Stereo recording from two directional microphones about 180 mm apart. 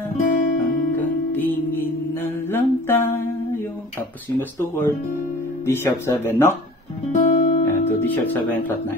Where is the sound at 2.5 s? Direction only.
15° left (ahead or behind).